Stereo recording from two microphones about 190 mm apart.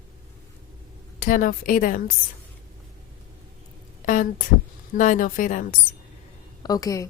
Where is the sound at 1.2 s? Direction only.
45° left (ahead or behind).